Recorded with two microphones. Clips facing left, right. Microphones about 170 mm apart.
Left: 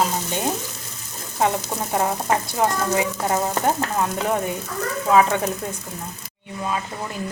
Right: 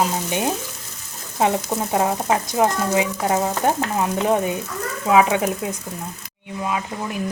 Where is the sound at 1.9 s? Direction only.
15° right (ahead or behind).